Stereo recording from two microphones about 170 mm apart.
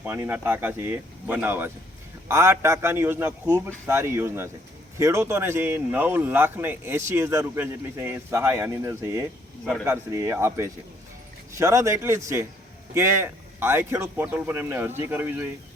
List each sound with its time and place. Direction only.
0.0 s speech: 10° right (ahead or behind)